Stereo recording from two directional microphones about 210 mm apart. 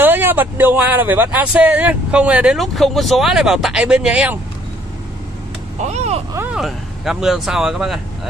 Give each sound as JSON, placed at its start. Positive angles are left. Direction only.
{"t": 0.0, "sound": "speech", "side_deg": -10}
{"t": 5.8, "sound": "speech", "side_deg": -30}
{"t": 6.3, "sound": "speech", "side_deg": -5}